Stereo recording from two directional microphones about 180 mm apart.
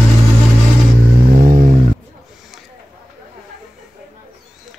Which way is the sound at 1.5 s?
30° right (ahead or behind).